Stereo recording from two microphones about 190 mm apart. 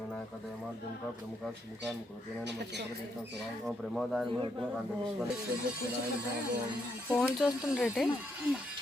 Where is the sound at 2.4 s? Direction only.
65° right (ahead or behind).